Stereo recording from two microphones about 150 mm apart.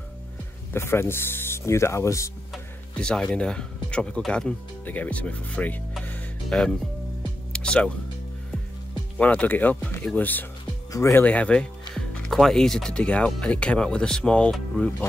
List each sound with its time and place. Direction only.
0.7 s speech: 15° left (ahead or behind)
2.5 s speech: 5° left (ahead or behind)
9.2 s speech: 10° left (ahead or behind)